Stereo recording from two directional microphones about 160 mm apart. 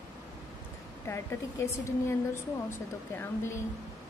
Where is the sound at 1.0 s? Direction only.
15° left (ahead or behind).